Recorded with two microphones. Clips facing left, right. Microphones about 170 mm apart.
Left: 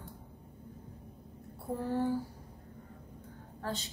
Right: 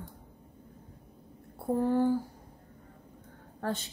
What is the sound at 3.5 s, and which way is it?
Speech, 55° right (ahead or behind).